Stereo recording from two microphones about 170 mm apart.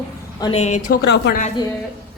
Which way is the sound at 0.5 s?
40° left (ahead or behind).